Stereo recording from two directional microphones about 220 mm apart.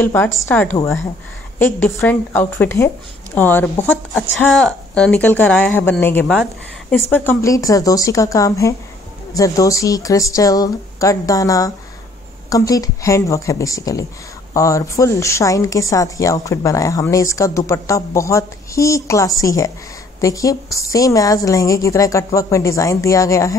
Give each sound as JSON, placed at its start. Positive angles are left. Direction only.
{"t": 0.0, "sound": "a woman's voice", "side_deg": 10}